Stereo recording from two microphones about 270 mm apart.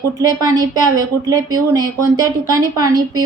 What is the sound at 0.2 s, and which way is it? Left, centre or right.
A woman's voice, centre.